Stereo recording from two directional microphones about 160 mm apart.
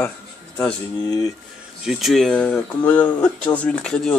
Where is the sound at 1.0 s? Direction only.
25° left (ahead or behind).